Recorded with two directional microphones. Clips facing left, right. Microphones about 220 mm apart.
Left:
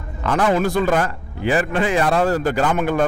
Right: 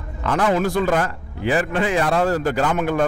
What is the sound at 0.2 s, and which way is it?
A man's voice, 20° left (ahead or behind).